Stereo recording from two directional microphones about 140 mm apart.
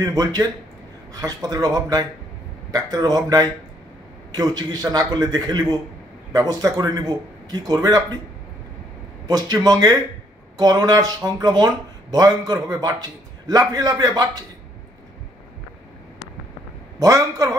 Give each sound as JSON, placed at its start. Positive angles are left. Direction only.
{"t": 0.0, "sound": "a man's voice", "side_deg": -25}
{"t": 9.3, "sound": "a man's voice", "side_deg": -25}
{"t": 17.0, "sound": "a man's voice", "side_deg": -25}